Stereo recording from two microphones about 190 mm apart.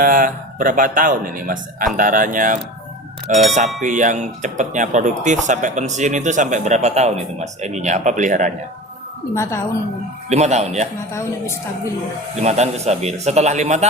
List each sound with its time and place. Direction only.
0.0 s speech: 45° right (ahead or behind)
9.3 s a woman's voice: 15° left (ahead or behind)
10.2 s speech: 35° right (ahead or behind)
12.4 s speech: 35° right (ahead or behind)